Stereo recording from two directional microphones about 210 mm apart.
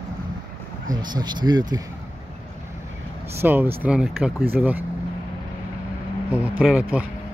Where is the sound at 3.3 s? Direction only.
10° right (ahead or behind).